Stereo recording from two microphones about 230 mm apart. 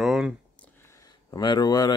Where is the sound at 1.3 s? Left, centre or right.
Centre.